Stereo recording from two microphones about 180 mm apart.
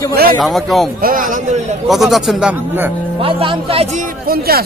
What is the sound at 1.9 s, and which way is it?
A man's voice, centre (ahead or behind).